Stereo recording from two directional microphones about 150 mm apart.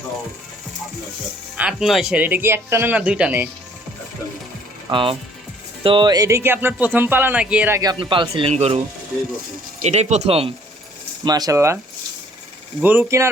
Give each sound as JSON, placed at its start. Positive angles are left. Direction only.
{"t": 1.5, "sound": "speech", "side_deg": -5}
{"t": 4.9, "sound": "speech", "side_deg": -35}
{"t": 7.8, "sound": "speech", "side_deg": -30}
{"t": 9.8, "sound": "speech", "side_deg": -45}
{"t": 11.3, "sound": "speech", "side_deg": -25}
{"t": 12.8, "sound": "speech", "side_deg": -10}